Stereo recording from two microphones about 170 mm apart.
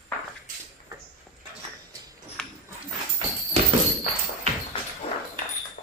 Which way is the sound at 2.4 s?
5° left (ahead or behind).